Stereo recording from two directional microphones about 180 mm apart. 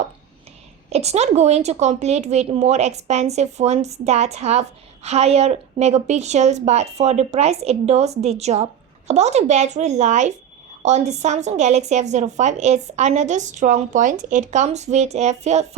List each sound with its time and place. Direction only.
0.9 s a woman's voice: 35° right (ahead or behind)